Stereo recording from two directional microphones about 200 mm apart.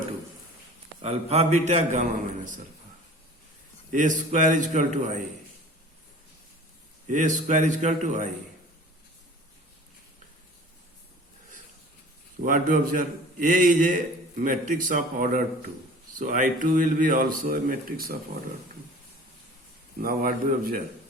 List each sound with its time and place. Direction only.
1.0 s a man's voice: 30° right (ahead or behind)
3.9 s a man's voice: 40° right (ahead or behind)
7.1 s a man's voice: 40° right (ahead or behind)
12.4 s a man's voice: 40° right (ahead or behind)
20.0 s speech: 45° right (ahead or behind)